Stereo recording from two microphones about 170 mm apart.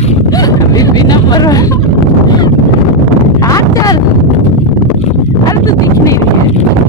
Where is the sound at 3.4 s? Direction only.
20° left (ahead or behind).